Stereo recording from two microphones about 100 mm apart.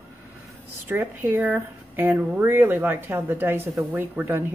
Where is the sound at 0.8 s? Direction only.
20° right (ahead or behind).